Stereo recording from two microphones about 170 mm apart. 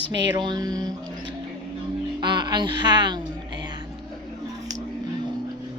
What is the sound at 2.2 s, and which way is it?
Music, 25° right (ahead or behind).